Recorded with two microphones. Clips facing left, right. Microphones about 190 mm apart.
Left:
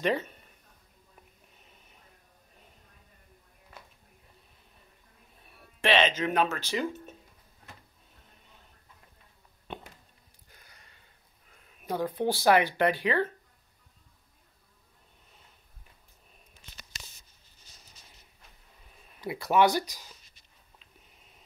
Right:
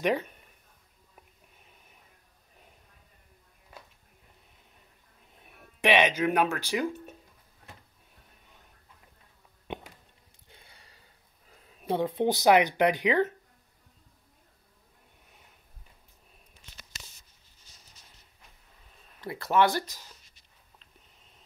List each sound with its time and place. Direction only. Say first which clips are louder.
0.0 s speech: right 1 dB; 10° right (ahead or behind)
5.4 s speech: right 2 dB; 15° right (ahead or behind)
10.5 s a sound: right 2 dB; 30° right (ahead or behind)
11.8 s speech: right 3 dB; 25° right (ahead or behind)
19.2 s speech: left 1 dB; 15° left (ahead or behind)